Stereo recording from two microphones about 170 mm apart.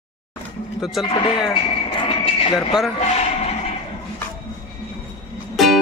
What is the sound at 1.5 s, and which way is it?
Clip-clop, 30° left (ahead or behind).